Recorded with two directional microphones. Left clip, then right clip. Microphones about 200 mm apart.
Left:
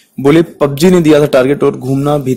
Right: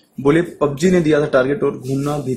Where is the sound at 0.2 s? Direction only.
35° left (ahead or behind).